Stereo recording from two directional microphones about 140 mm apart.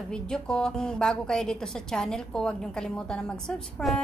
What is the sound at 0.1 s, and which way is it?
A woman's voice, 5° left (ahead or behind).